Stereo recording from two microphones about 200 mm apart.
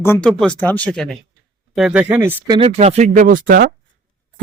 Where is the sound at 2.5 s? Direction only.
30° right (ahead or behind); by 3.7 s 45° right (ahead or behind).